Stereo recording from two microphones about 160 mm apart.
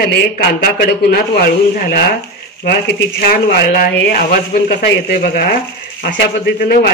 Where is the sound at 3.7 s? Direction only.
80° left.